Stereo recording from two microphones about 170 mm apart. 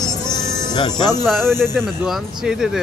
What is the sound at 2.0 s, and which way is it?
Speech, centre (ahead or behind).